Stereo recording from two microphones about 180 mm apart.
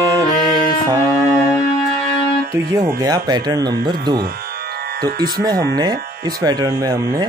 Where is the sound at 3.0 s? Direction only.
25° right (ahead or behind).